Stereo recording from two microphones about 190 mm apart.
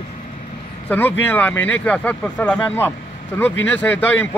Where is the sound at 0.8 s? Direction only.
10° left (ahead or behind).